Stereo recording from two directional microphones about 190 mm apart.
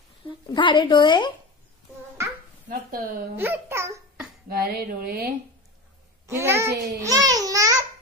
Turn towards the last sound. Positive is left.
turn(degrees=-20)  # may be behind; listen again after turning